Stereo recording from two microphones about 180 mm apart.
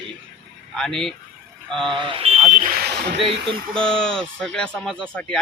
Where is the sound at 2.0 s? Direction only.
30° right (ahead or behind); by 3.2 s 60° right (ahead or behind).